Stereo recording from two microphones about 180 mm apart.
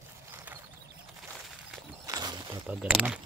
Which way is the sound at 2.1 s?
20° right (ahead or behind).